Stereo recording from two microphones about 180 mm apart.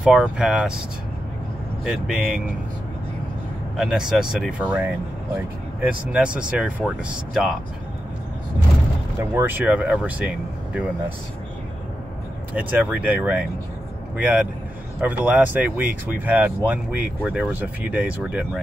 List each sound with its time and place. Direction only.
0.0 s speech: 5° right (ahead or behind)
1.9 s speech: 5° right (ahead or behind)
3.7 s speech: 5° right (ahead or behind)
9.2 s speech: 15° right (ahead or behind)
12.5 s speech: 10° right (ahead or behind)